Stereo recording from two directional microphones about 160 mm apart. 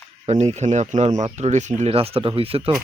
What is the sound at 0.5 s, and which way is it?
Speech, 45° right (ahead or behind).